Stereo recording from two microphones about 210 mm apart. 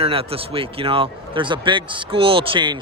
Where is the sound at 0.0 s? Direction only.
25° right (ahead or behind).